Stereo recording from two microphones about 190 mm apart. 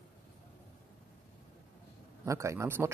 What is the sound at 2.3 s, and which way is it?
Speech, 15° right (ahead or behind).